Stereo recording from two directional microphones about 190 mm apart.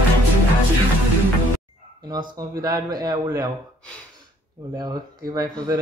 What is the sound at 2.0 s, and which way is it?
Speech, 25° right (ahead or behind).